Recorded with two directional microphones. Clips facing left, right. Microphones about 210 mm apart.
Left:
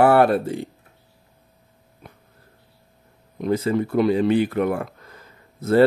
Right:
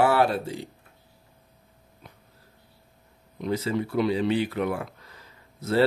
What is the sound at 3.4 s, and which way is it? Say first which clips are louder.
Speech: left 6 dB; 50° left (ahead or behind).